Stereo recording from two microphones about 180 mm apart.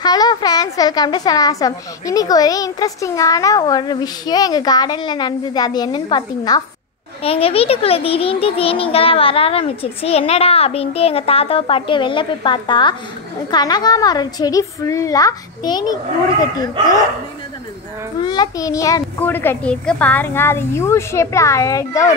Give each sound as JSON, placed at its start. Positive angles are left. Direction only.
{"t": 0.0, "sound": "a child's voice", "side_deg": 20}
{"t": 18.2, "sound": "a child's voice", "side_deg": 25}